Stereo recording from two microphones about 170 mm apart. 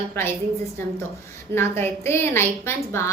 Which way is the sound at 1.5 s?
15° left (ahead or behind).